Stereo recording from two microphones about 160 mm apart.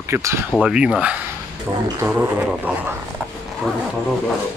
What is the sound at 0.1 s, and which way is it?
Speech, 15° right (ahead or behind).